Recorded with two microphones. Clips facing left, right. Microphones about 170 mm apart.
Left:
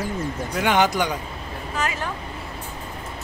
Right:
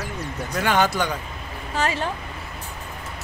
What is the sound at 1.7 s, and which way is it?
Speech, 30° right (ahead or behind).